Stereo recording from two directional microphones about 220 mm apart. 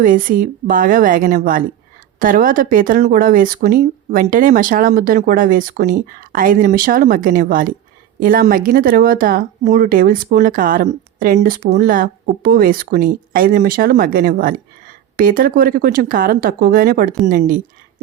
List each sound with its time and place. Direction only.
0.0 s speech: 40° right (ahead or behind)